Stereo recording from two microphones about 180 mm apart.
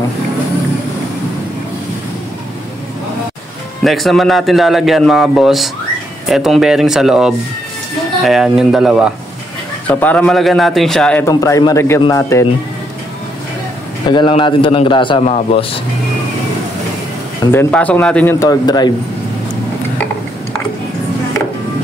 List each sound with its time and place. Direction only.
3.8 s speech: centre (ahead or behind)
9.8 s speech: 10° left (ahead or behind)
11.2 s a man's voice: 20° left (ahead or behind)
14.0 s a man's voice: 25° left (ahead or behind)
17.5 s speech: 10° left (ahead or behind)
18.4 s a man's voice: 20° left (ahead or behind)